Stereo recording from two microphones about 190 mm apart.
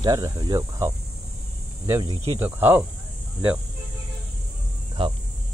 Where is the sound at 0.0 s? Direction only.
20° right (ahead or behind).